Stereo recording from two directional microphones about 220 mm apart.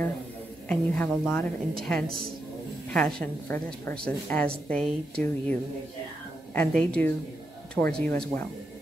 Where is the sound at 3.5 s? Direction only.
10° left (ahead or behind).